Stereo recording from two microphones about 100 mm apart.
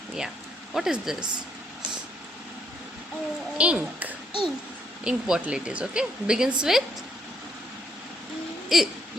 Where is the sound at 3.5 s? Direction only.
10° right (ahead or behind).